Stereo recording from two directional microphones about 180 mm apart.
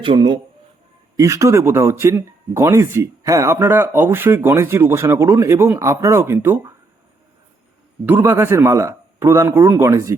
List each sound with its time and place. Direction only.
0.0 s speech: 25° right (ahead or behind)
8.0 s speech: 10° right (ahead or behind)